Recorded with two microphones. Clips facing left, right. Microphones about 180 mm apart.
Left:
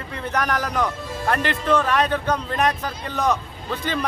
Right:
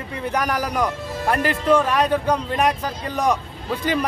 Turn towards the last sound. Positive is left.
turn(degrees=-10)  # may be behind; listen again after turning